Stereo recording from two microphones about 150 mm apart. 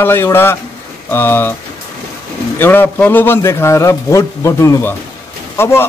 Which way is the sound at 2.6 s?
15° left (ahead or behind).